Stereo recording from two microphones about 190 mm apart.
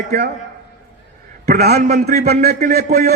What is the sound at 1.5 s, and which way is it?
Speech, 55° right (ahead or behind).